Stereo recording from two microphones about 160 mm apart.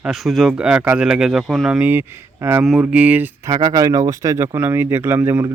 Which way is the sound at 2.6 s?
5° right (ahead or behind).